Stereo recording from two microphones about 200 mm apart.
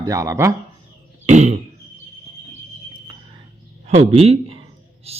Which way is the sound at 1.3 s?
35° right (ahead or behind).